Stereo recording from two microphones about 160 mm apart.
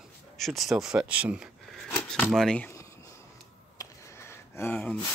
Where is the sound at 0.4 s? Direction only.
Centre (ahead or behind).